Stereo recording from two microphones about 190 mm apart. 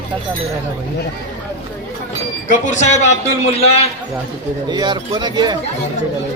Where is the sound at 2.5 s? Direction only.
40° left (ahead or behind).